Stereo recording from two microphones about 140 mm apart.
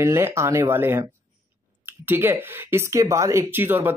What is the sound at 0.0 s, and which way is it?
Speech, 20° right (ahead or behind).